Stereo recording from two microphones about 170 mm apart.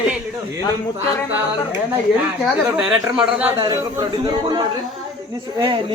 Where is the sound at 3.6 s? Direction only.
25° right (ahead or behind).